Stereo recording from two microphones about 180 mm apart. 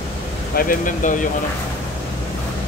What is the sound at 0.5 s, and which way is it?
Speech, 50° left (ahead or behind).